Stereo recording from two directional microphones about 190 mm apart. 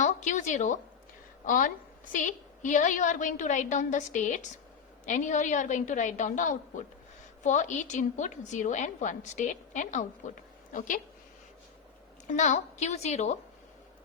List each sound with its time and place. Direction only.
0.0 s a woman's voice: 40° left (ahead or behind)
12.3 s a woman's voice: 40° left (ahead or behind)